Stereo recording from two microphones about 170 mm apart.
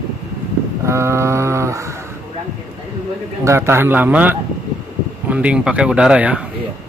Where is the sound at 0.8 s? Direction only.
15° right (ahead or behind).